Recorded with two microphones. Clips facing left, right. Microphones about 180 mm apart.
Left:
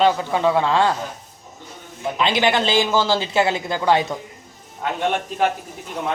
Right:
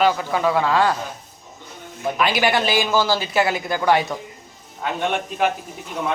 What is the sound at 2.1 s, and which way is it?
Speech, 20° left (ahead or behind).